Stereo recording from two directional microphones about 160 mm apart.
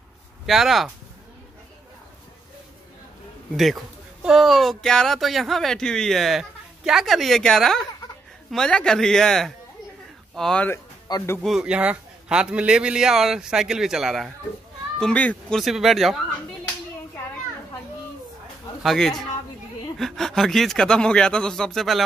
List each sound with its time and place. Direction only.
0.5 s speech: centre (ahead or behind)
3.5 s speech: centre (ahead or behind)
11.1 s speech: 20° left (ahead or behind)
11.4 s speech: 5° right (ahead or behind)
18.8 s a man's voice: centre (ahead or behind)